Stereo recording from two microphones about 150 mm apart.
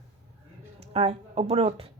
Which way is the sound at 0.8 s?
45° right (ahead or behind).